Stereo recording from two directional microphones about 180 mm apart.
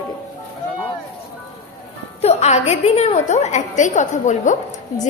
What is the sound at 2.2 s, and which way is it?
A woman's voice, 35° left (ahead or behind).